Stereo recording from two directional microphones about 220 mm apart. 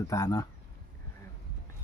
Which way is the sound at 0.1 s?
15° left (ahead or behind).